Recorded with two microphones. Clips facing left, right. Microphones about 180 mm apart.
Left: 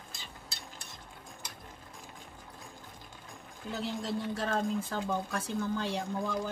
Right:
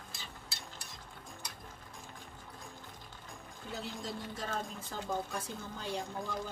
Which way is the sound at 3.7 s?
75° left (ahead or behind).